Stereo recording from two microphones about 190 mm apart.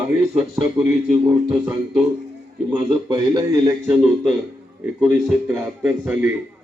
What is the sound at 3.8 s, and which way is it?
A man's voice, 5° right (ahead or behind).